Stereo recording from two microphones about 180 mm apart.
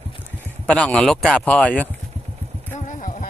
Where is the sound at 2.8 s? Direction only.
45° left (ahead or behind).